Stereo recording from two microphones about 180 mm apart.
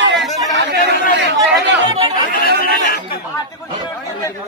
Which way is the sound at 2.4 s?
65° right (ahead or behind).